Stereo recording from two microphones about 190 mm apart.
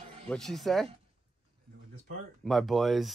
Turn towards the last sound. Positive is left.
turn(degrees=0)  # may be behind; listen again after turning